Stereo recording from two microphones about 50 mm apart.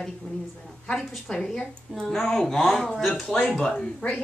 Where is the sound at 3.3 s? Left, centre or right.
Centre.